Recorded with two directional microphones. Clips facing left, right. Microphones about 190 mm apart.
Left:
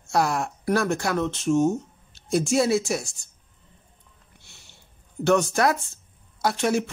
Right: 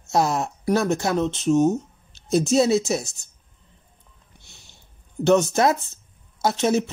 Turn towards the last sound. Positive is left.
turn(degrees=-20)  # may be behind; listen again after turning